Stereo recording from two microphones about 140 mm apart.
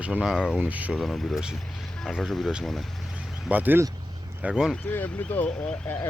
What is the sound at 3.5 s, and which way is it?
Speech, 10° right (ahead or behind).